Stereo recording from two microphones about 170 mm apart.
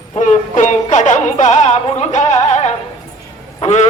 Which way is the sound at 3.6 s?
40° left (ahead or behind).